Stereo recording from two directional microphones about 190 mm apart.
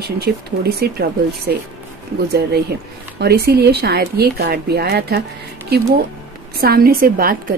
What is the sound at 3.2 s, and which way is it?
Speech, 55° right (ahead or behind).